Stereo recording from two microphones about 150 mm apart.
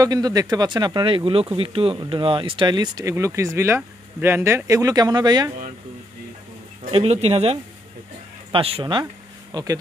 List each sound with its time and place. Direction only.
0.0 s speech: 25° right (ahead or behind)
6.9 s speech: 45° right (ahead or behind); by 9.8 s 25° right (ahead or behind)